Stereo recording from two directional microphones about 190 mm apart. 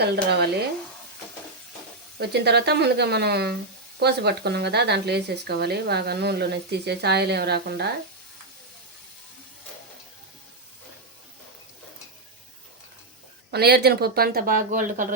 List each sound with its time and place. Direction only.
0.0 s speech: 60° right (ahead or behind)
2.1 s speech: 60° right (ahead or behind)
13.5 s speech: 60° right (ahead or behind)